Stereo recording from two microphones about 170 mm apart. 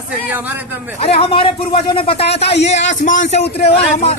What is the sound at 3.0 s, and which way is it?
Speech, 50° left (ahead or behind).